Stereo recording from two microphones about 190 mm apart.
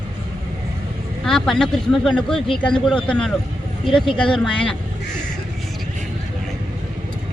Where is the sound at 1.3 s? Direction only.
Centre (ahead or behind).